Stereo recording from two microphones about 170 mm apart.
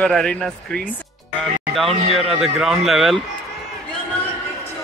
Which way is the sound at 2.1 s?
Centre (ahead or behind).